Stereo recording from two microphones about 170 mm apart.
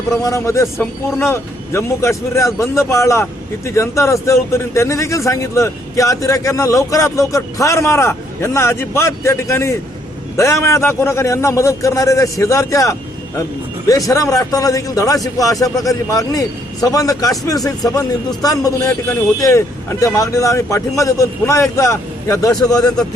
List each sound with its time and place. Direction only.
0.2 s a man's voice: 20° left (ahead or behind)